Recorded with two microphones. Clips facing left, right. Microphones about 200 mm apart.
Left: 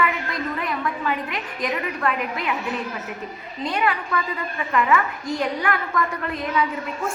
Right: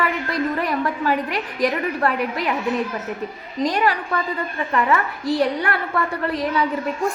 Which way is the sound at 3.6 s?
35° right (ahead or behind).